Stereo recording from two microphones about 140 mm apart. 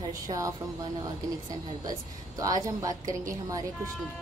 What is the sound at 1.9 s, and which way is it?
A woman's voice, 25° right (ahead or behind).